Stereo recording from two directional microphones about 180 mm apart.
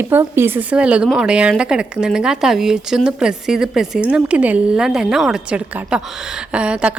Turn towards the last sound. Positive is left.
turn(degrees=-5)  # may be behind; listen again after turning